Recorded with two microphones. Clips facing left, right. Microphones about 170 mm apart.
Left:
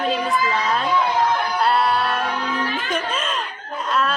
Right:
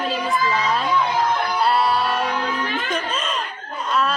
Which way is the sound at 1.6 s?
Centre (ahead or behind).